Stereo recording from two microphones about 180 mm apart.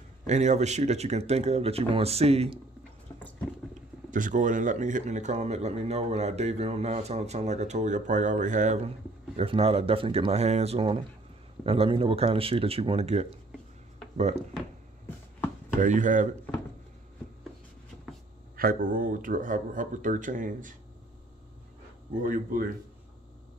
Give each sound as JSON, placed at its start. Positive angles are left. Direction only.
{"t": 0.3, "sound": "speech", "side_deg": -40}
{"t": 4.1, "sound": "speech", "side_deg": -45}
{"t": 15.8, "sound": "speech", "side_deg": -45}
{"t": 18.6, "sound": "speech", "side_deg": -55}
{"t": 22.2, "sound": "speech", "side_deg": -50}